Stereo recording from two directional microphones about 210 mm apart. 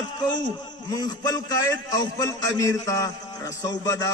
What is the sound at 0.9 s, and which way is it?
A man's voice, 15° left (ahead or behind).